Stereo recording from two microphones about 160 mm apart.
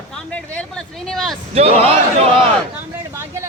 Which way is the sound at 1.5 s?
40° right (ahead or behind).